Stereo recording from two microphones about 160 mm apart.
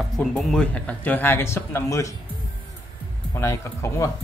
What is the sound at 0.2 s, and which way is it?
A man's voice, centre (ahead or behind).